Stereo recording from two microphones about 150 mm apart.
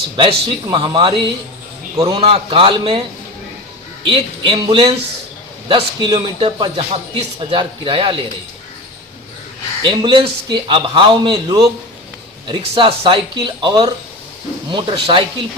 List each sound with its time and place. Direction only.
0.2 s speech: 35° right (ahead or behind)
4.0 s speech: 35° right (ahead or behind)
9.8 s speech: 35° right (ahead or behind)